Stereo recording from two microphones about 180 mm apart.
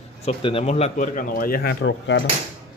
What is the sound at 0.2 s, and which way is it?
A man's voice, 35° left (ahead or behind).